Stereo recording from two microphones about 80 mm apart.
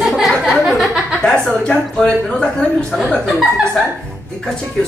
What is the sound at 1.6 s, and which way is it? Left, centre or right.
Speech, centre.